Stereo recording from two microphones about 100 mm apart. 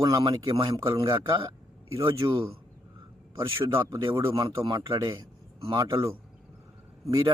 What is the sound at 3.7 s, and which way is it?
Speech, 30° right (ahead or behind).